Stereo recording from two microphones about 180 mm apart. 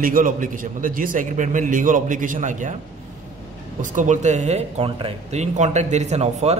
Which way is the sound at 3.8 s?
45° right (ahead or behind).